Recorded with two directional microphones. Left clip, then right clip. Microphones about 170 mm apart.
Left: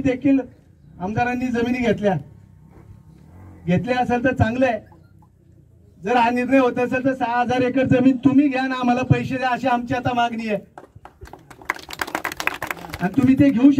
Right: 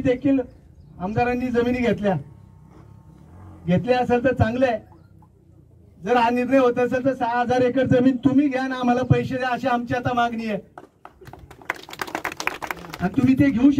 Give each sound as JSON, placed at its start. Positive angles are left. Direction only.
{"t": 0.0, "sound": "a man's voice", "side_deg": 0}
{"t": 3.6, "sound": "a man's voice", "side_deg": 0}
{"t": 6.0, "sound": "a man's voice", "side_deg": 0}
{"t": 12.4, "sound": "a sound", "side_deg": 20}
{"t": 13.0, "sound": "a man's voice", "side_deg": 0}